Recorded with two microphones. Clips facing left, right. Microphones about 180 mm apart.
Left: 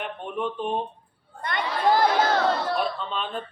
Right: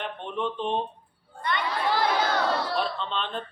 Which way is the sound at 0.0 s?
10° left (ahead or behind).